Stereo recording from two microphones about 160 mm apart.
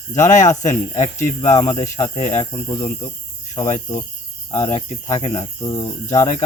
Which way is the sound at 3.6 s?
25° left (ahead or behind).